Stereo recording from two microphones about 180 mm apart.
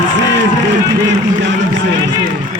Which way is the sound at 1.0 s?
90° right.